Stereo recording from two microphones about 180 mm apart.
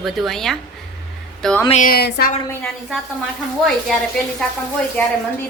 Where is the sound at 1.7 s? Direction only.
50° left (ahead or behind).